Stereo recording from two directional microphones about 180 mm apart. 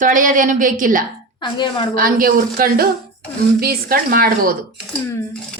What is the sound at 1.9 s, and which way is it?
A woman's voice, 50° right (ahead or behind).